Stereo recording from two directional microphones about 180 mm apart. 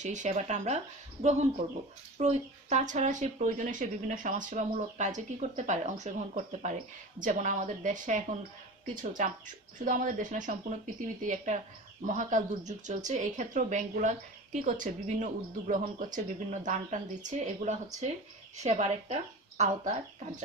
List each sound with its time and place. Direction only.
0.0 s speech: 40° right (ahead or behind)